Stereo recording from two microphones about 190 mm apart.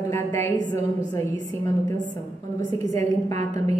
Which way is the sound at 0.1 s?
15° left (ahead or behind).